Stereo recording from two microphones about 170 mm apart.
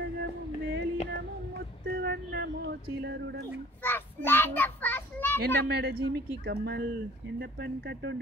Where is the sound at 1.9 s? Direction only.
75° right (ahead or behind).